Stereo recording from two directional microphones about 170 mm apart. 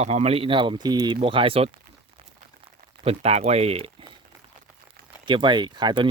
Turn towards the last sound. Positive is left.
turn(degrees=-25)  # may be behind; listen again after turning